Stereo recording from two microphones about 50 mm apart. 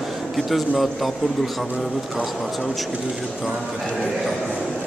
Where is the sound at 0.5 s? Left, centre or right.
Centre.